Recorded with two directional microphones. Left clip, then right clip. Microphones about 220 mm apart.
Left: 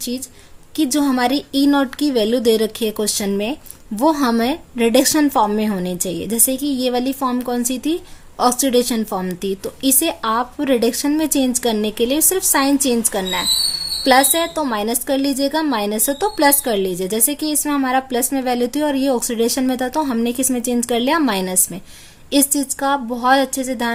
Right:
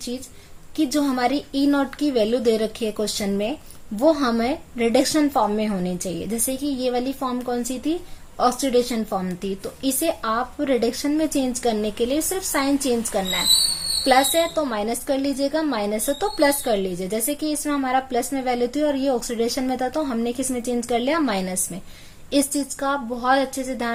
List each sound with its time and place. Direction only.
0.8 s a woman's voice: 45° left (ahead or behind)